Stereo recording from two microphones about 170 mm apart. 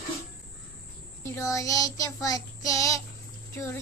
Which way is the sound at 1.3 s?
20° left (ahead or behind).